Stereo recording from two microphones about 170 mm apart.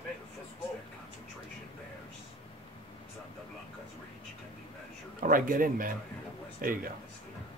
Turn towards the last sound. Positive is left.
turn(degrees=-55)  # may be behind; listen again after turning